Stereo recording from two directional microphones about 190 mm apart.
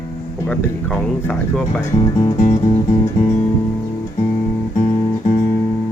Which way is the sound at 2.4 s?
35° left (ahead or behind).